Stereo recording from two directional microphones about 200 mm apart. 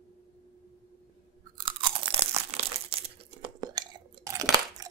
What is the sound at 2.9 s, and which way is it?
Crumpling, 30° right (ahead or behind).